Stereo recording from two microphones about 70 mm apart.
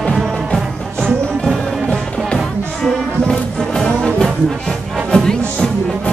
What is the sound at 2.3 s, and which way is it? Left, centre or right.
Music, centre.